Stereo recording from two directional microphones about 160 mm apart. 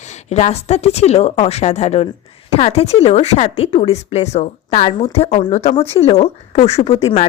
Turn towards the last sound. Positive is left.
turn(degrees=35)  # may be behind; listen again after turning